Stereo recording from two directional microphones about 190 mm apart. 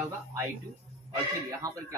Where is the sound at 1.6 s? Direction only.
20° right (ahead or behind).